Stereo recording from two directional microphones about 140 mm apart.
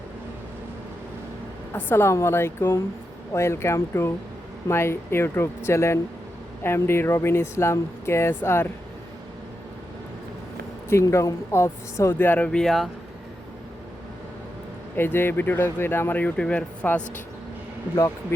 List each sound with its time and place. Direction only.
1.7 s speech: 15° left (ahead or behind)
10.8 s speech: 20° left (ahead or behind); by 12.9 s centre (ahead or behind)
14.9 s speech: 15° left (ahead or behind)
17.9 s speech: 20° left (ahead or behind)